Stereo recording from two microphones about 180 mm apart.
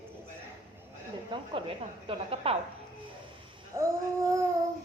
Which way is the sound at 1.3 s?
30° right (ahead or behind).